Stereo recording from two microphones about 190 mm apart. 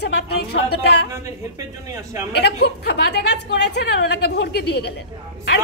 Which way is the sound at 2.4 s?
60° left (ahead or behind).